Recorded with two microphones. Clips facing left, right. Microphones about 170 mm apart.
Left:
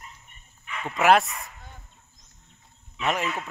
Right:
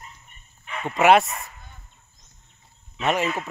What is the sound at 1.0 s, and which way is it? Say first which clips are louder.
Speech: right 3 dB; centre (ahead or behind).